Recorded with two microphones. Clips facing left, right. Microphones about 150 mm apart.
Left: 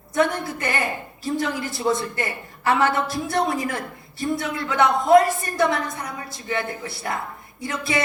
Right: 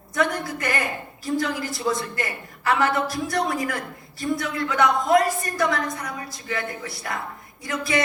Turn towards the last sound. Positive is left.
turn(degrees=25)  # may be behind; listen again after turning